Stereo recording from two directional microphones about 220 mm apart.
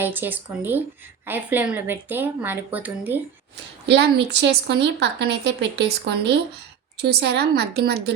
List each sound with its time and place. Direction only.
0.0 s a woman's voice: 10° right (ahead or behind)
3.8 s speech: 50° right (ahead or behind)